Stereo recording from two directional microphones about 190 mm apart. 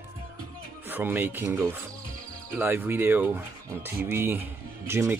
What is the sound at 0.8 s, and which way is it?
Speech, 10° right (ahead or behind).